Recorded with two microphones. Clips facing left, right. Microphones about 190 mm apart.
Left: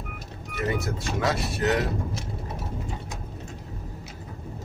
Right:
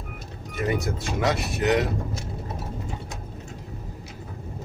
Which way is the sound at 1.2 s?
20° right (ahead or behind).